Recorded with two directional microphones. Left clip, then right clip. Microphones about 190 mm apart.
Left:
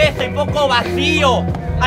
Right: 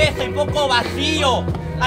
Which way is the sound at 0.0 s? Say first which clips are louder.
Left 3 dB; centre (ahead or behind).